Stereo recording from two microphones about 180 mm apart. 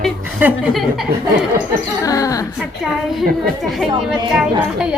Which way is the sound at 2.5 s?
Centre (ahead or behind).